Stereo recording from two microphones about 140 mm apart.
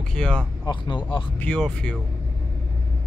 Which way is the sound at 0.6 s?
35° left (ahead or behind).